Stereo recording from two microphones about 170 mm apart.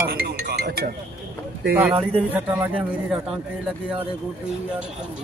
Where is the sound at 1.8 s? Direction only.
10° right (ahead or behind).